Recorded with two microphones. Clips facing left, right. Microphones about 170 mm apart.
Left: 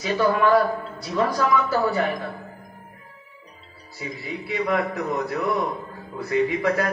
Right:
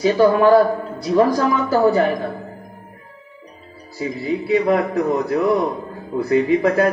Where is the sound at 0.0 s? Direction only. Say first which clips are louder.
Right 7 dB; 30° right (ahead or behind).